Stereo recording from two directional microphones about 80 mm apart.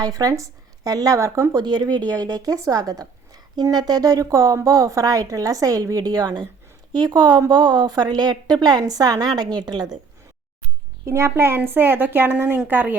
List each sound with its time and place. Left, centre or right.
0.0 s a woman's voice: right
1.6 s a woman's voice: right
11.0 s a woman's voice: right